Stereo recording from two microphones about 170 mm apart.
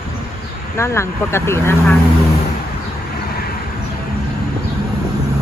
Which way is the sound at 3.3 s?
60° left (ahead or behind).